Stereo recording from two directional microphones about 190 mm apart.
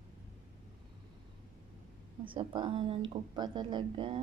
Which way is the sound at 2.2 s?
25° right (ahead or behind).